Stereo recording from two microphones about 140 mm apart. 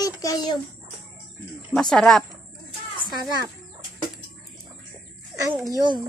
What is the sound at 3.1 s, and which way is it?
Speech, 30° right (ahead or behind).